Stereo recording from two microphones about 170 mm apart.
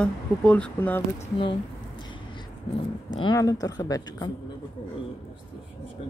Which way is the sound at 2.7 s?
35° left (ahead or behind).